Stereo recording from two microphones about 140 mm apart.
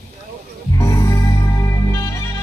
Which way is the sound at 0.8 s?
20° left (ahead or behind).